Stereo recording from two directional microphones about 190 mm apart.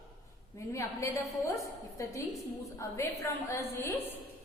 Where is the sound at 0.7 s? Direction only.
15° left (ahead or behind).